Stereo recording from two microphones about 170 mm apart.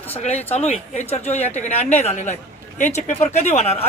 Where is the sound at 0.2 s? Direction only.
40° left (ahead or behind).